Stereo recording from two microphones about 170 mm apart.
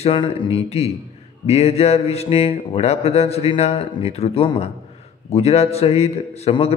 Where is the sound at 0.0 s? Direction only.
30° left (ahead or behind).